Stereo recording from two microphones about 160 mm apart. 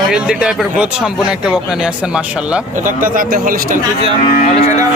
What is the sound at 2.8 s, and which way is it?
Speech, 60° right (ahead or behind).